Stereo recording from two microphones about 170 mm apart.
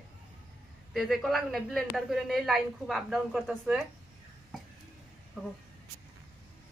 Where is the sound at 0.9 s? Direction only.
Centre (ahead or behind).